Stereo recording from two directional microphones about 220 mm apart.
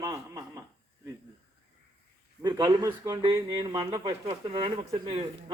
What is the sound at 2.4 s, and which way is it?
Speech, 15° right (ahead or behind).